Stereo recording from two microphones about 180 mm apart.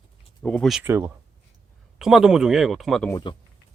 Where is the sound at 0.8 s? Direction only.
10° right (ahead or behind).